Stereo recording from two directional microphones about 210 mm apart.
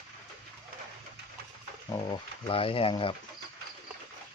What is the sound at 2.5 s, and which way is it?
Speech, 25° left (ahead or behind).